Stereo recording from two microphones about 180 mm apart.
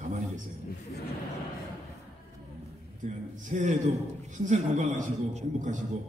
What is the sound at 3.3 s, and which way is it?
A man's voice, 45° right (ahead or behind).